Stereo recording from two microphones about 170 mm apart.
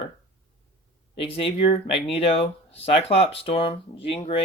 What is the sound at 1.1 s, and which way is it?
Speech, 30° left (ahead or behind).